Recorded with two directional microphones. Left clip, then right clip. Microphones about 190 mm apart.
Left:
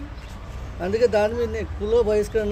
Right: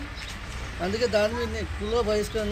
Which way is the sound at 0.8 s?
25° left (ahead or behind).